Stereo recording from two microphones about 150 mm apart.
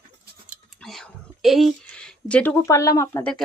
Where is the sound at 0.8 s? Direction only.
Centre (ahead or behind).